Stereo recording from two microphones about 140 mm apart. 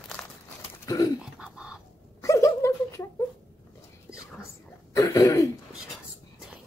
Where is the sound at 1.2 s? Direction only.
5° right (ahead or behind).